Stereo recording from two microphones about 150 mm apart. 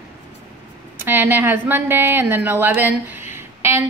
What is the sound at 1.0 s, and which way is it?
A woman's voice, 15° right (ahead or behind).